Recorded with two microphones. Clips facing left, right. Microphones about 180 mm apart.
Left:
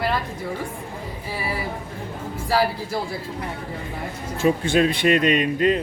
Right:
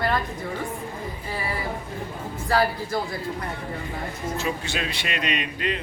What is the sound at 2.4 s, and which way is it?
Speech, 10° left (ahead or behind).